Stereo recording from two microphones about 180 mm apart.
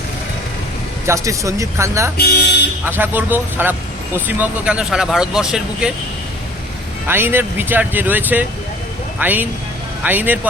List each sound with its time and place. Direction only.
1.0 s speech: 15° right (ahead or behind)
2.1 s speech: 65° left (ahead or behind)
2.8 s speech: 10° right (ahead or behind)
7.1 s speech: 10° right (ahead or behind)